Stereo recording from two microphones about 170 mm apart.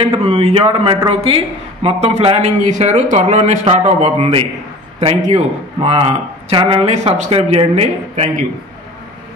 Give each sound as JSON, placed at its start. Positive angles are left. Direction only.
{"t": 0.2, "sound": "a man's voice", "side_deg": -40}